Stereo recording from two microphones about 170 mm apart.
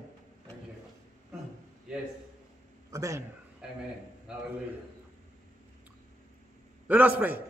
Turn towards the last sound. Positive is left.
turn(degrees=-10)  # may be behind; listen again after turning